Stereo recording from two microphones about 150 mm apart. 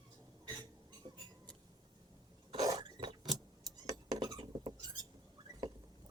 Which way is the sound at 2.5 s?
25° right (ahead or behind).